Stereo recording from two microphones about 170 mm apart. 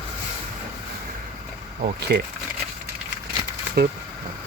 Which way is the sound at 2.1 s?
65° right (ahead or behind).